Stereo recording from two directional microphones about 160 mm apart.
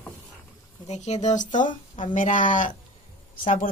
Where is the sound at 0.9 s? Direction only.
45° left (ahead or behind).